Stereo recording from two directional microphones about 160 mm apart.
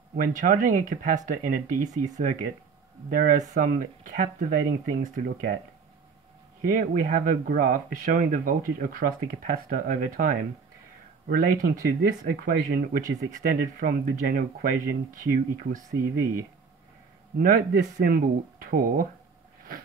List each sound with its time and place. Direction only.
0.1 s speech: 55° right (ahead or behind)
6.8 s speech: 60° right (ahead or behind)
15.8 s speech: 20° right (ahead or behind)
17.4 s speech: 65° right (ahead or behind)